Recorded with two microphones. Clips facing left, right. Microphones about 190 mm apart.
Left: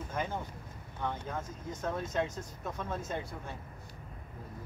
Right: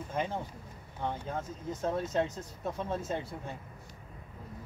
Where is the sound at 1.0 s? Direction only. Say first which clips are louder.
Right 1 dB; 30° right (ahead or behind).